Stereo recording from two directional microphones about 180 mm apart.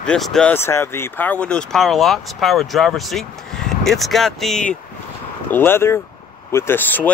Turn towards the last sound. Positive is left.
turn(degrees=10)  # may be behind; listen again after turning